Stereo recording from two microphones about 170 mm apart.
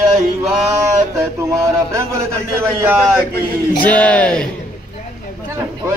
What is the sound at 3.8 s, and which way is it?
Speech, 10° left (ahead or behind).